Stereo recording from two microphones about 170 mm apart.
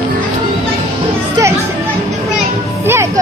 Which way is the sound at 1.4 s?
20° right (ahead or behind).